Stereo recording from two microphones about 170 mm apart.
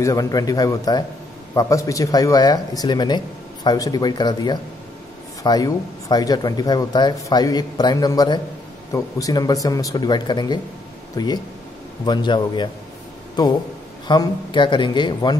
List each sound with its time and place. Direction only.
0.0 s speech: 20° left (ahead or behind)